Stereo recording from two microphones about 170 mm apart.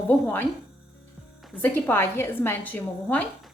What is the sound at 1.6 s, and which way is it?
Speech, 10° left (ahead or behind).